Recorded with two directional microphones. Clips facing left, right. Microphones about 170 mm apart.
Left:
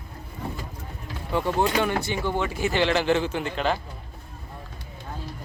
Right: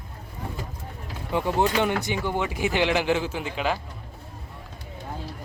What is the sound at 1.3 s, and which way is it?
Speech, 15° right (ahead or behind).